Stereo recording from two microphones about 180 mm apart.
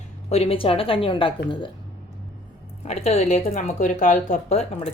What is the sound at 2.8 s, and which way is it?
Speech, 35° left (ahead or behind).